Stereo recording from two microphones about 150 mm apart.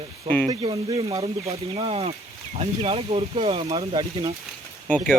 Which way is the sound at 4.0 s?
25° right (ahead or behind).